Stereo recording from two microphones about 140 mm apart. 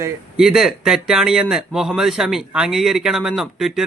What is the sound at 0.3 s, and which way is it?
A man's voice, 5° right (ahead or behind).